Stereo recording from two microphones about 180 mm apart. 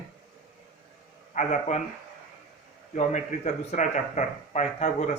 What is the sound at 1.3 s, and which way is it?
Speech, 45° left (ahead or behind).